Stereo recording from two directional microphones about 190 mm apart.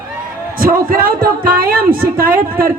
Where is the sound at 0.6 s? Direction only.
50° right (ahead or behind).